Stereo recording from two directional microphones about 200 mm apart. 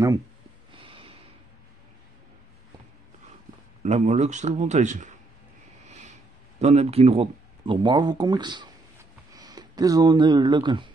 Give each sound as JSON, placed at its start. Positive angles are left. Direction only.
{"t": 0.7, "sound": "snort", "side_deg": -25}
{"t": 3.8, "sound": "a man's voice", "side_deg": -35}
{"t": 5.9, "sound": "vehicle", "side_deg": -35}
{"t": 6.6, "sound": "speech", "side_deg": -35}